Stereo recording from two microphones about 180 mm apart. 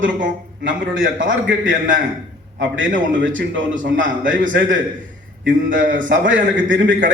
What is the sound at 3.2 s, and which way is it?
Speech, 90° right.